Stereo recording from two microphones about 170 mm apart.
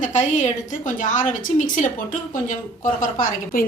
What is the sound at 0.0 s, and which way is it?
A woman's voice, 45° left (ahead or behind).